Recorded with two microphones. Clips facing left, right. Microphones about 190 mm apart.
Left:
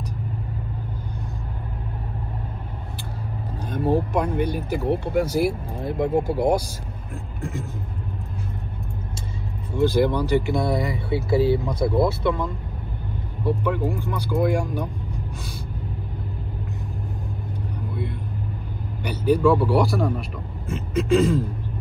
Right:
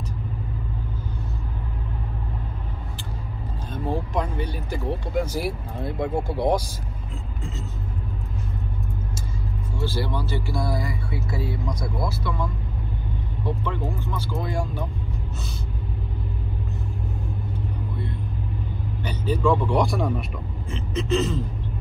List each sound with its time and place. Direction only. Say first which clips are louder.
3.7 s vehicle: left 6 dB; 15° left (ahead or behind)
4.5 s speech: left 5 dB; 15° left (ahead or behind)
9.8 s speech: left 9 dB; 15° left (ahead or behind)
13.4 s speech: left 6 dB; 10° left (ahead or behind)
19.0 s speech: left 4 dB; 10° left (ahead or behind)